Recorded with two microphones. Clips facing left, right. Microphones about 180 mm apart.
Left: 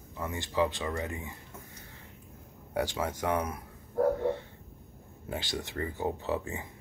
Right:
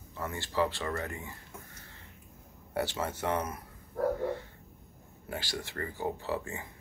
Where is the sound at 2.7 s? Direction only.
10° left (ahead or behind).